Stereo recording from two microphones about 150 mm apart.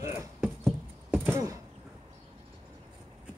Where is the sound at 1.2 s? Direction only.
20° right (ahead or behind).